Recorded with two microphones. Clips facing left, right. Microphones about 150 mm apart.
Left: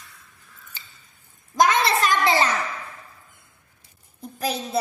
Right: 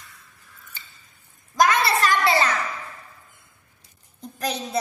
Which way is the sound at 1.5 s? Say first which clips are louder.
Even; 25° left (ahead or behind).